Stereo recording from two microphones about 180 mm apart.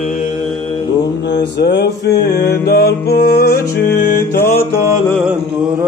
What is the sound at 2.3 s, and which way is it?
Mantra, 15° left (ahead or behind).